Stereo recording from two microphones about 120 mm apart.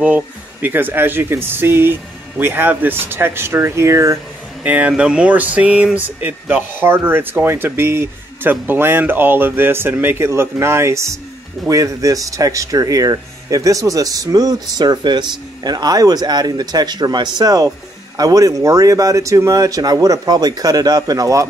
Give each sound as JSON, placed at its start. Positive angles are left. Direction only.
{"t": 0.0, "sound": "speech", "side_deg": -15}
{"t": 4.6, "sound": "speech", "side_deg": -10}